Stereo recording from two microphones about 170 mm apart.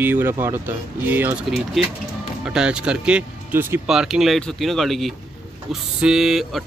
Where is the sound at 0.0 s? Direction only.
10° right (ahead or behind).